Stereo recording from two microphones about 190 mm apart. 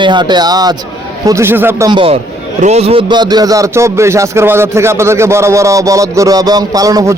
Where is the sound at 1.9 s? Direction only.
25° right (ahead or behind).